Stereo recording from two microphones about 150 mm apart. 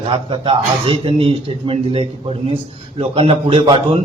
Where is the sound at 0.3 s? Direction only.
35° right (ahead or behind).